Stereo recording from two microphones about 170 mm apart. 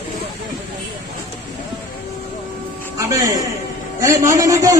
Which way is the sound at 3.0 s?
20° right (ahead or behind).